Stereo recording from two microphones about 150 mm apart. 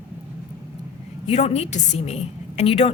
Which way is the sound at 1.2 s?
45° left (ahead or behind).